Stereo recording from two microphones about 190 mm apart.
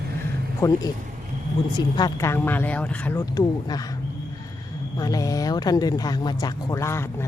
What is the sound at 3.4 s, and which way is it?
Speech, 20° left (ahead or behind).